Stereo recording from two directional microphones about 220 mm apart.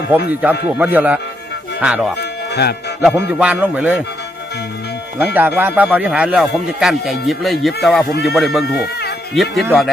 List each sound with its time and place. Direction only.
0.8 s music: 10° right (ahead or behind)
1.8 s speech: 5° right (ahead or behind)
2.5 s speech: 50° left (ahead or behind)
3.0 s music: 5° right (ahead or behind)
5.2 s speech: 10° right (ahead or behind)